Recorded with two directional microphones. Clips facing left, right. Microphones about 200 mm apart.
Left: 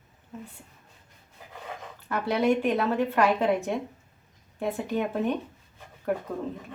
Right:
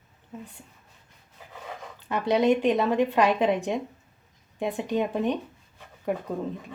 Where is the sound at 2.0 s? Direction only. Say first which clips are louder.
Right 2 dB; 20° right (ahead or behind).